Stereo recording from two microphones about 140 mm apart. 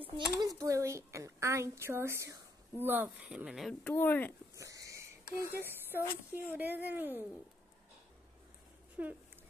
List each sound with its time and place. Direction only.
0.1 s a child's voice: 25° right (ahead or behind); by 3.7 s 5° right (ahead or behind)
3.8 s speech: 10° left (ahead or behind)
4.6 s a sound: 25° right (ahead or behind)
5.7 s speech: 15° right (ahead or behind)